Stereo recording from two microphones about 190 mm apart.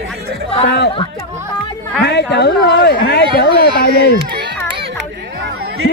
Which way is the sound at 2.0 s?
60° left (ahead or behind).